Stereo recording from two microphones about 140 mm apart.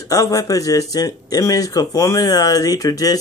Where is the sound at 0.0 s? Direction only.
25° left (ahead or behind).